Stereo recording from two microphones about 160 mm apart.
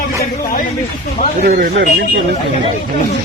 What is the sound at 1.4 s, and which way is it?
Speech, 80° right.